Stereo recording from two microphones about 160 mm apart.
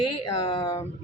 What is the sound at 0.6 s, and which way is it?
Speech, 20° left (ahead or behind).